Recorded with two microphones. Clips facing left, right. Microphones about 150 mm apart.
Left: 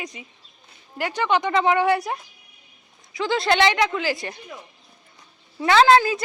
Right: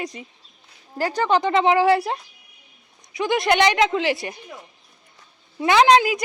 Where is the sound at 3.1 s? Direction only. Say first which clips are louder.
Right 1 dB; 20° right (ahead or behind).